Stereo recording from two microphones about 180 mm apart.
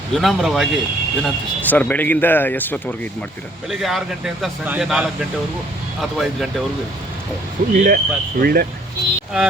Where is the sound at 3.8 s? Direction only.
Centre (ahead or behind).